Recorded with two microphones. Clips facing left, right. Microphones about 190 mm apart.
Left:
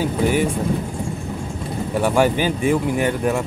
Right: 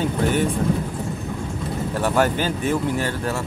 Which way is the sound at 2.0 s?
10° left (ahead or behind).